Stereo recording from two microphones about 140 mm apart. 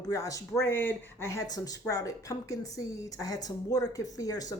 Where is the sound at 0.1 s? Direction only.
25° left (ahead or behind).